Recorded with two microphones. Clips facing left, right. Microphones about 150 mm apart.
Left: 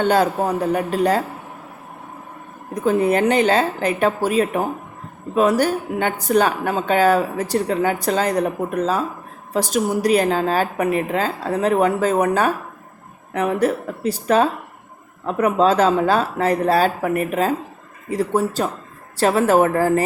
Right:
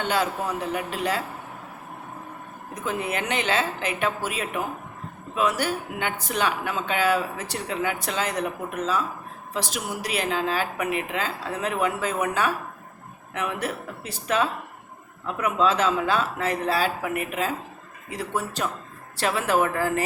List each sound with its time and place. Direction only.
0.0 s speech: 45° left (ahead or behind)
2.8 s a woman's voice: 40° left (ahead or behind)